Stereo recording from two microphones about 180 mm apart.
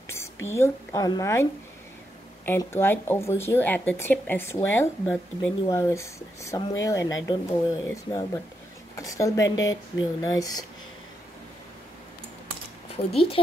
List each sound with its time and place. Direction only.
0.5 s a woman's voice: 20° left (ahead or behind)
12.9 s speech: 30° left (ahead or behind)